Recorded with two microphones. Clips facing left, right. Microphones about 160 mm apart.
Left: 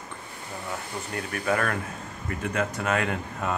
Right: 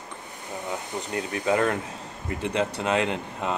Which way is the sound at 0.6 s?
20° right (ahead or behind).